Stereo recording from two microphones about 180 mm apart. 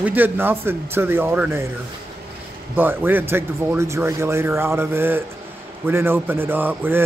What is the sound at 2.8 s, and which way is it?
Speech, 10° right (ahead or behind).